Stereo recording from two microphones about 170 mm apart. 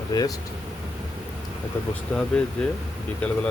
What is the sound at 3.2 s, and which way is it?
Speech, 10° left (ahead or behind).